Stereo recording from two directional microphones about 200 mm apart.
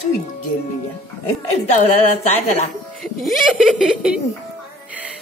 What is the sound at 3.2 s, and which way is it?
Speech, centre (ahead or behind).